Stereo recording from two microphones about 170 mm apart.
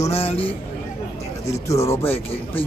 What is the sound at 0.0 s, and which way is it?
Speech, 35° left (ahead or behind).